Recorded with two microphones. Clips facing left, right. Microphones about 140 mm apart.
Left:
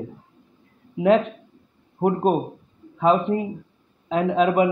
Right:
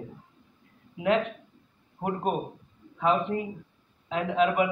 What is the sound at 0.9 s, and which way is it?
A man's voice, 30° left (ahead or behind).